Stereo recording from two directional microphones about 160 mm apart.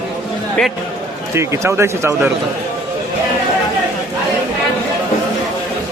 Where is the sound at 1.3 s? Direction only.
15° right (ahead or behind).